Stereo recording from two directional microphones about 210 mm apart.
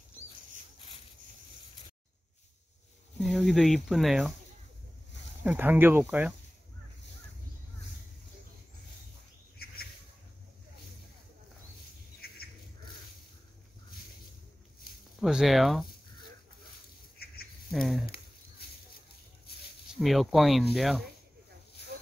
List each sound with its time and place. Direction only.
3.3 s speech: 5° right (ahead or behind)
5.4 s speech: 10° right (ahead or behind)
12.2 s bird: 45° left (ahead or behind)
15.1 s speech: centre (ahead or behind)
17.2 s insect: 45° left (ahead or behind)
17.6 s speech: centre (ahead or behind)
20.0 s speech: centre (ahead or behind)